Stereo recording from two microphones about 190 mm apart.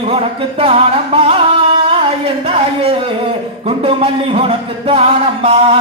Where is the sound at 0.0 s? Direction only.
30° right (ahead or behind).